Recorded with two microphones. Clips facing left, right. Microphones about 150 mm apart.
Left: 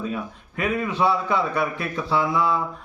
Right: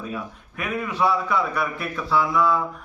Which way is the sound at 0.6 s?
25° left (ahead or behind).